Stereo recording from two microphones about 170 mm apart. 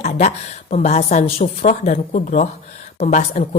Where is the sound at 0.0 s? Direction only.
45° left (ahead or behind).